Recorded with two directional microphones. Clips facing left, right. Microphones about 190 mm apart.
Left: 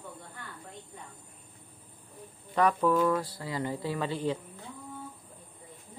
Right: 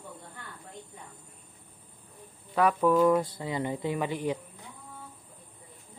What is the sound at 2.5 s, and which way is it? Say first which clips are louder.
Speech: right 2 dB; 10° right (ahead or behind).